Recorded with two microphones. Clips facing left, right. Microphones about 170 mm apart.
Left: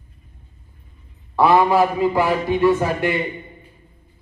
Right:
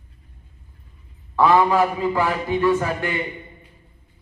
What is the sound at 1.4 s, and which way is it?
Speech, 10° left (ahead or behind).